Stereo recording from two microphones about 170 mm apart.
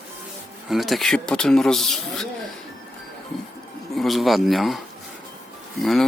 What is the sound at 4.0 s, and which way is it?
Speech, centre (ahead or behind).